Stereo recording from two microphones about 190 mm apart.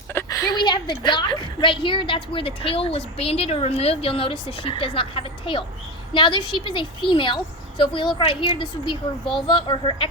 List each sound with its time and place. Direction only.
0.1 s a woman's voice: 15° left (ahead or behind)